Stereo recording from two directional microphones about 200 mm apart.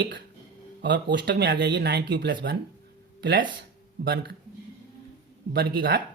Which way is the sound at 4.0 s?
50° right (ahead or behind).